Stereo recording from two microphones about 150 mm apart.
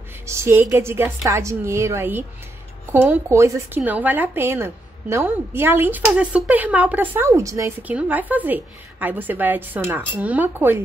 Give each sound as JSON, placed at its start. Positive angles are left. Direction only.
{"t": 0.3, "sound": "a woman's voice", "side_deg": -20}